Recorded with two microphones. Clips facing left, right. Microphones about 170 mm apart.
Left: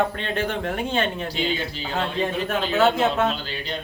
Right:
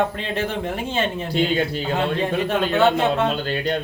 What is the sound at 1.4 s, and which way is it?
Speech, 50° right (ahead or behind).